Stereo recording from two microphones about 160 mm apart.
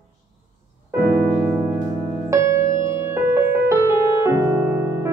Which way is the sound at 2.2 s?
20° right (ahead or behind).